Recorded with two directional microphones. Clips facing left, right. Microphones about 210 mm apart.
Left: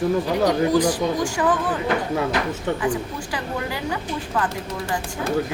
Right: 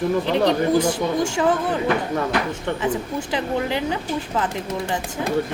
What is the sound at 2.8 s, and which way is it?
Speech, 25° right (ahead or behind).